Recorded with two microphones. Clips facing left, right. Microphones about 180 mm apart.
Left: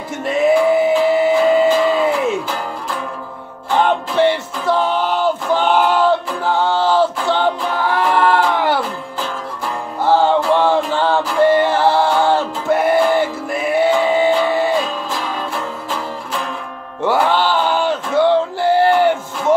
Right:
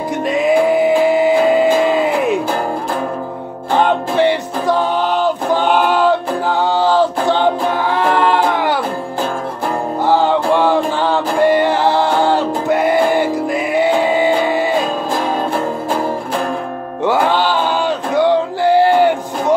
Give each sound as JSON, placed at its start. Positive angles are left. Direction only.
{"t": 0.3, "sound": "music", "side_deg": -15}
{"t": 4.2, "sound": "music", "side_deg": -15}
{"t": 6.8, "sound": "a sound", "side_deg": -15}
{"t": 7.2, "sound": "music", "side_deg": -15}
{"t": 10.0, "sound": "music", "side_deg": -15}
{"t": 14.8, "sound": "music", "side_deg": -50}
{"t": 17.0, "sound": "music", "side_deg": -15}